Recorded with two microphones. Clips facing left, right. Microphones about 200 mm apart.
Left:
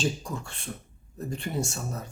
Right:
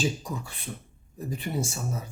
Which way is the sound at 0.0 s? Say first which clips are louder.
Right 1 dB; 5° right (ahead or behind).